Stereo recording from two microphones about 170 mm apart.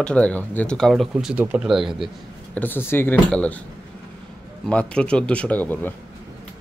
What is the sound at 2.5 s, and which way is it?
Speech, 10° left (ahead or behind).